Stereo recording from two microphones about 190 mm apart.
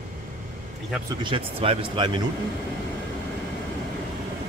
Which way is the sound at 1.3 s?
30° right (ahead or behind).